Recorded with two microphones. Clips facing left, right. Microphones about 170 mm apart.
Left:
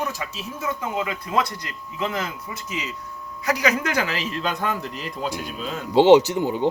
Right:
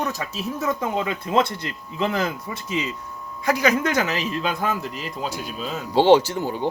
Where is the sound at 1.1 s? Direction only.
25° right (ahead or behind).